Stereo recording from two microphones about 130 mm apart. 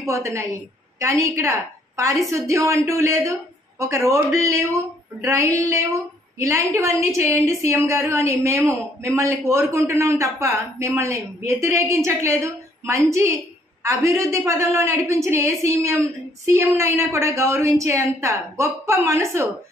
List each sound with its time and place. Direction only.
0.0 s a woman's voice: 25° right (ahead or behind)